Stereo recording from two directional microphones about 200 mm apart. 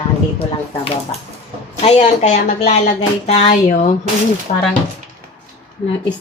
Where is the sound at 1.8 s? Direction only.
35° left (ahead or behind).